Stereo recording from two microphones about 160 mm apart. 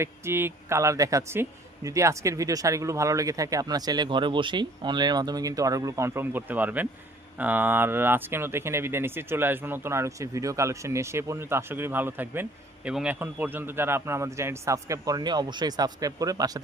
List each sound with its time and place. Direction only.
0.0 s speech: 15° right (ahead or behind)